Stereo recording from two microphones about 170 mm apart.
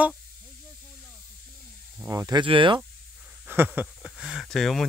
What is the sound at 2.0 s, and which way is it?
Speech, 15° right (ahead or behind).